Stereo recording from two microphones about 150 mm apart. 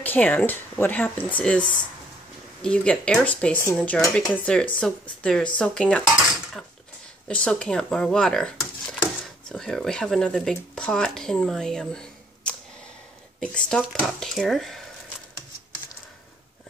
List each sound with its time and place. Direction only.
0.0 s speech: 10° left (ahead or behind)
5.2 s cutlery: 5° left (ahead or behind)
7.2 s speech: 5° left (ahead or behind)